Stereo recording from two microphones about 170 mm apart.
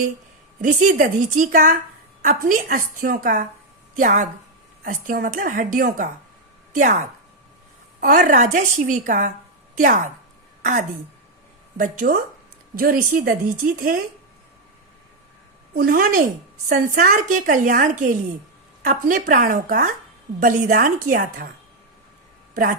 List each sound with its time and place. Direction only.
0.6 s a woman's voice: 50° right (ahead or behind)
8.0 s a woman's voice: 50° right (ahead or behind)
15.7 s a woman's voice: 55° right (ahead or behind)